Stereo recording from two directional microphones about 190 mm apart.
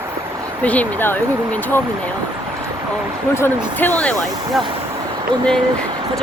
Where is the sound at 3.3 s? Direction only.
10° left (ahead or behind).